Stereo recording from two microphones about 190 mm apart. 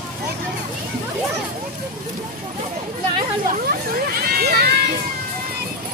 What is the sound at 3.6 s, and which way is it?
Hubbub, 55° right (ahead or behind).